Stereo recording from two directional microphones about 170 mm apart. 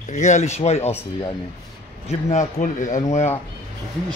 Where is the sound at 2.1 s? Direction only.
40° left (ahead or behind).